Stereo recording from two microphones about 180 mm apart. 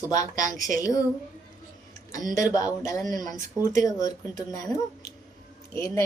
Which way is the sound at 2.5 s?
20° left (ahead or behind).